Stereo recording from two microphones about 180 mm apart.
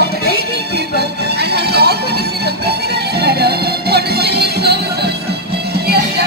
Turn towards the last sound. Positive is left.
turn(degrees=-65)  # may be behind; listen again after turning